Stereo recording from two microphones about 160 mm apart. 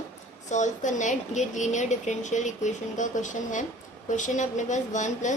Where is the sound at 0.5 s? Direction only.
50° left (ahead or behind).